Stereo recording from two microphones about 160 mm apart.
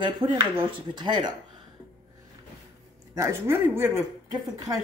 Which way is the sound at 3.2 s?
15° right (ahead or behind).